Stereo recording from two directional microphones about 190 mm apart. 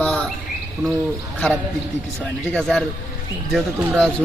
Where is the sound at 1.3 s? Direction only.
5° left (ahead or behind).